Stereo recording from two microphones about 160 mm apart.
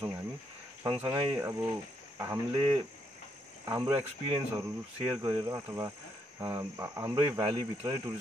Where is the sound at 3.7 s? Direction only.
15° right (ahead or behind).